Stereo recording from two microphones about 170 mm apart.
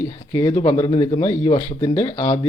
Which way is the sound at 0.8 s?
35° left (ahead or behind).